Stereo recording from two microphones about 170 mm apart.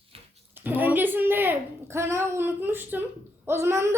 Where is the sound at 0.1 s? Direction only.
35° right (ahead or behind).